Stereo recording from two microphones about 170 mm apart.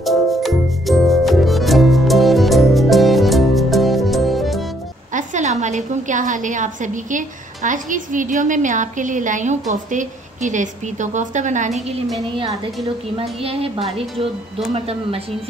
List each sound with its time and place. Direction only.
0.0 s music: centre (ahead or behind)
5.1 s a woman's voice: 45° right (ahead or behind)
13.1 s a woman's voice: 35° right (ahead or behind)